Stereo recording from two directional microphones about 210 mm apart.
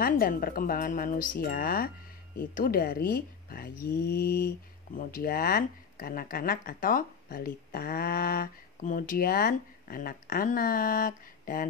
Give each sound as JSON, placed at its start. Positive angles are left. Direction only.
{"t": 0.0, "sound": "speech", "side_deg": 45}